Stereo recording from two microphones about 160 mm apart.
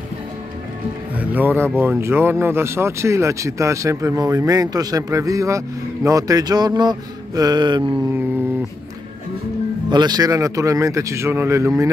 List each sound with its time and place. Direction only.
1.1 s speech: 10° right (ahead or behind); by 7.9 s 30° right (ahead or behind)
9.8 s speech: 25° right (ahead or behind)